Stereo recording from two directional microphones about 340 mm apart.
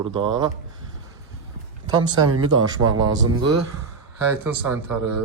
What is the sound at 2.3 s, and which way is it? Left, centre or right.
Speech, right.